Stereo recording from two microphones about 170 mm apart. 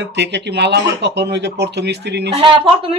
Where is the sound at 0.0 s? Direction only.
90° right.